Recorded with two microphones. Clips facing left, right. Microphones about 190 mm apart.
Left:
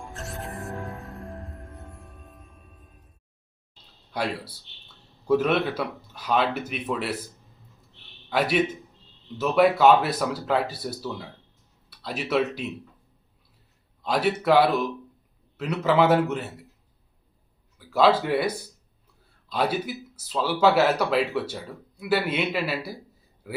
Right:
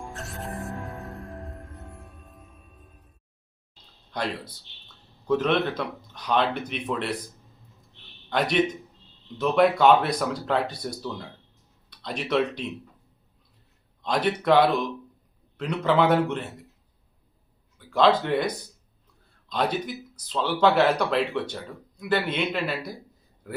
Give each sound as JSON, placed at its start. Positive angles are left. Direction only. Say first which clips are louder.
{"t": 0.1, "sound": "music", "louder": "even", "side_deg": 0}
{"t": 4.1, "sound": "speech", "louder": "left 1 dB", "side_deg": 10}
{"t": 8.3, "sound": "speech", "louder": "even", "side_deg": 5}
{"t": 14.0, "sound": "speech", "louder": "left 1 dB", "side_deg": 5}
{"t": 17.7, "sound": "speech", "louder": "even", "side_deg": 5}